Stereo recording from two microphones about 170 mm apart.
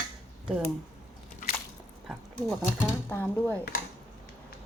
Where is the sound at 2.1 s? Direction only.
Centre (ahead or behind).